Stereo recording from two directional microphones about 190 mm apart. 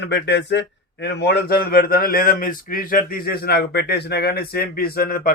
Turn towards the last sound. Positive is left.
turn(degrees=50)  # may be behind; listen again after turning